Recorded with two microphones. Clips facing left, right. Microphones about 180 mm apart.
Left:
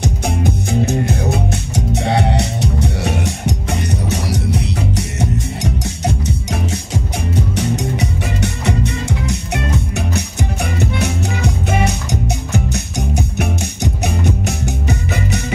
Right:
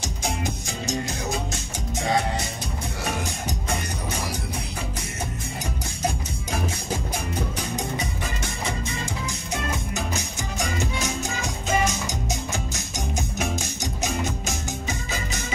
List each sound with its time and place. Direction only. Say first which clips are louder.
0.0 s music: left 9 dB; 60° left (ahead or behind)